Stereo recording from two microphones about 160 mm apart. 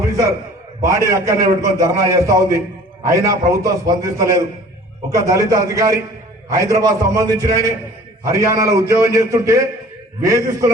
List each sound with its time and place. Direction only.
0.8 s a man's voice: 20° right (ahead or behind)